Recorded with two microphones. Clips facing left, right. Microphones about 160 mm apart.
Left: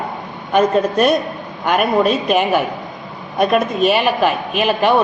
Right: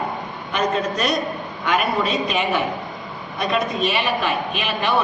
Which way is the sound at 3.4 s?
50° left (ahead or behind).